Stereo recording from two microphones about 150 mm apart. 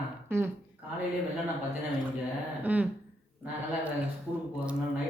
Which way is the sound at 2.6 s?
10° right (ahead or behind).